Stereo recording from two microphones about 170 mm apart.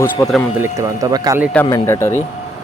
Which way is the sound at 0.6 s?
20° right (ahead or behind).